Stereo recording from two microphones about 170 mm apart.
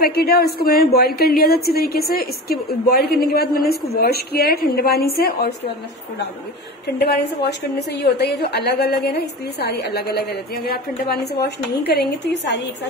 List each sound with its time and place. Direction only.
0.0 s a woman's voice: 70° left (ahead or behind)
7.0 s a woman's voice: 75° left (ahead or behind)